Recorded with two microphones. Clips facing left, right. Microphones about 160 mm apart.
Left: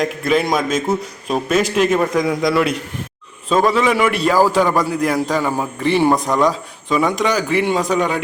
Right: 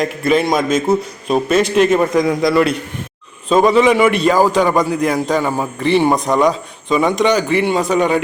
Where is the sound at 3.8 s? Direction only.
Centre (ahead or behind).